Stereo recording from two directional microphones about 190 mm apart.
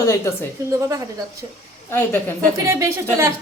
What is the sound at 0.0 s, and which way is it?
Speech, 15° left (ahead or behind).